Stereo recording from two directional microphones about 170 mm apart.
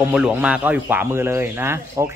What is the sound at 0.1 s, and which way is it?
Speech, 5° right (ahead or behind).